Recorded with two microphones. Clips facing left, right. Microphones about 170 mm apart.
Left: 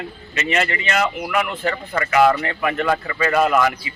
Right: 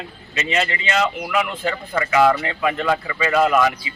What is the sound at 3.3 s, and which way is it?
Speech, 20° left (ahead or behind).